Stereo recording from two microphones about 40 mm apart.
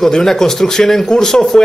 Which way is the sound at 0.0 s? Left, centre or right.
Centre.